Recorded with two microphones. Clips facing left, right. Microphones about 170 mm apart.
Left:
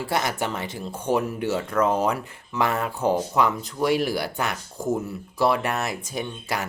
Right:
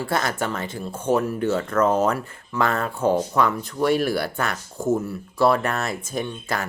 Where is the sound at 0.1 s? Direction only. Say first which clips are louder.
Even; 15° left (ahead or behind).